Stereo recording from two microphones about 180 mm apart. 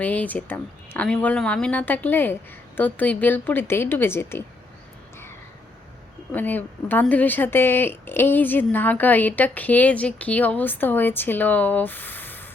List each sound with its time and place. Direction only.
0.0 s speech: 10° left (ahead or behind)
6.3 s speech: 10° left (ahead or behind)